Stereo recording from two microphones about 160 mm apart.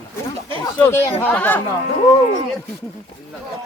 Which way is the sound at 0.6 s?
15° left (ahead or behind).